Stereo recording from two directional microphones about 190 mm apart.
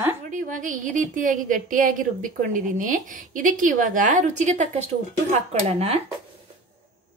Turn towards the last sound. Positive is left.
turn(degrees=-35)  # may be behind; listen again after turning